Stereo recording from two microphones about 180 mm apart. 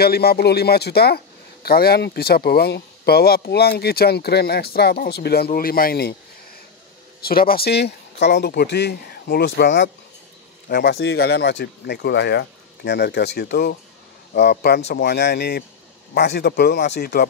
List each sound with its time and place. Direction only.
0.0 s a man's voice: 60° left (ahead or behind)
7.2 s speech: 55° left (ahead or behind); by 9.8 s 75° left (ahead or behind)
10.7 s a man's voice: 65° left (ahead or behind)